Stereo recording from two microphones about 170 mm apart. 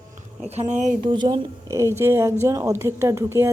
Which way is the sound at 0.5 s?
45° right (ahead or behind).